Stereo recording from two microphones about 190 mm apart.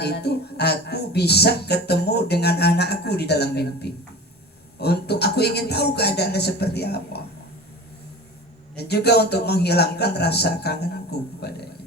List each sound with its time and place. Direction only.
0.0 s speech: 60° left (ahead or behind)
8.7 s speech: 60° left (ahead or behind)